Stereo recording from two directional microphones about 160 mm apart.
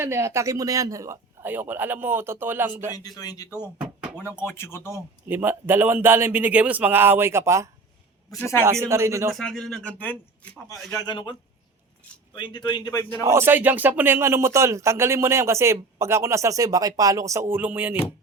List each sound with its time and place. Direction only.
0.0 s speech: 15° right (ahead or behind)
2.9 s a man's voice: 25° left (ahead or behind)
3.8 s a sound: 5° right (ahead or behind)
4.2 s speech: 15° left (ahead or behind)
4.9 s speech: 15° right (ahead or behind)
8.3 s speech: 15° left (ahead or behind)
8.6 s speech: 15° right (ahead or behind)
9.3 s speech: 5° left (ahead or behind)
10.9 s a man's voice: 25° left (ahead or behind)
13.2 s speech: 15° right (ahead or behind)